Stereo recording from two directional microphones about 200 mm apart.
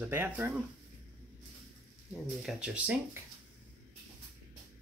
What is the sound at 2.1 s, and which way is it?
Speech, centre (ahead or behind).